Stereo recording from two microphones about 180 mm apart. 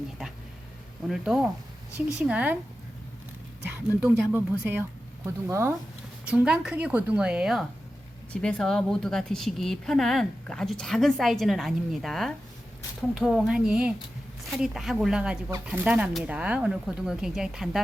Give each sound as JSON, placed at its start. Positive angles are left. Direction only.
{"t": 1.0, "sound": "a woman's voice", "side_deg": -5}
{"t": 3.8, "sound": "a woman's voice", "side_deg": -10}